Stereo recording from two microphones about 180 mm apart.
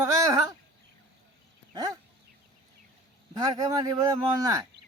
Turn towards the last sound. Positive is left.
turn(degrees=-20)  # may be behind; listen again after turning